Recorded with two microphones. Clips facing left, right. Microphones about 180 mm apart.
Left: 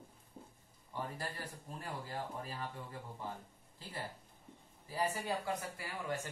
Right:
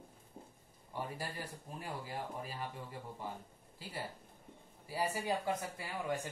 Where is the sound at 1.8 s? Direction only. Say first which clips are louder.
Even; 10° right (ahead or behind).